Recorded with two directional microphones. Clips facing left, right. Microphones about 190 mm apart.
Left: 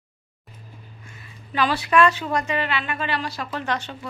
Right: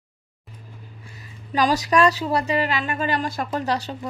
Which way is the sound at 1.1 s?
40° right (ahead or behind).